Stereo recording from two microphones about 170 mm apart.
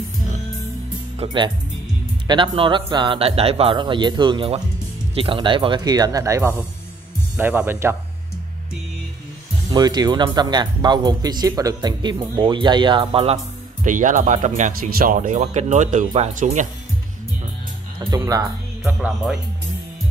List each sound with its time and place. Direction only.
1.2 s speech: 25° right (ahead or behind)
9.7 s speech: 25° right (ahead or behind)
13.8 s speech: 50° right (ahead or behind)
18.1 s speech: 20° right (ahead or behind)
18.9 s speech: centre (ahead or behind)